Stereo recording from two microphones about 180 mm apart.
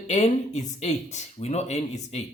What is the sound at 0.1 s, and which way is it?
Speech, 40° left (ahead or behind).